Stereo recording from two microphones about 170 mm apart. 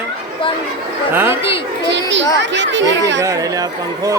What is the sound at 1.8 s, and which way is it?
Speech, 90° right.